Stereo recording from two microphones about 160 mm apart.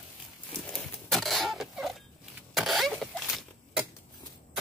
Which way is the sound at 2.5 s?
Centre (ahead or behind).